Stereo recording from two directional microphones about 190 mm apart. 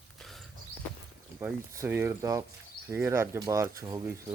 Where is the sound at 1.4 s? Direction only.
10° right (ahead or behind).